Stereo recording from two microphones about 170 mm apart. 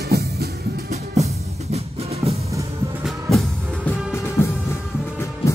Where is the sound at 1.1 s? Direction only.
40° right (ahead or behind).